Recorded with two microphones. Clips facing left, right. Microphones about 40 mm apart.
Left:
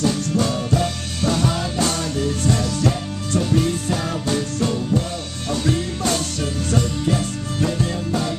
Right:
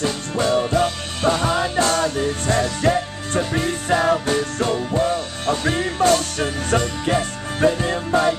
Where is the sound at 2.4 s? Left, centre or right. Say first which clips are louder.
Right 3 dB; right.